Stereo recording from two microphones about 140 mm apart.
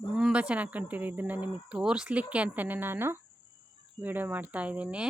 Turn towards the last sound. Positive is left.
turn(degrees=-10)  # may be behind; listen again after turning